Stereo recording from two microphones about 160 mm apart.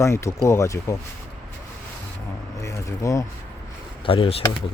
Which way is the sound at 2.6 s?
20° left (ahead or behind).